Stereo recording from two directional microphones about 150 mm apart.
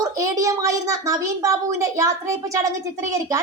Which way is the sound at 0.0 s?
20° right (ahead or behind).